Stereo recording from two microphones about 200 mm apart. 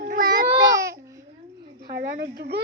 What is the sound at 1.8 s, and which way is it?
Speech, 50° right (ahead or behind).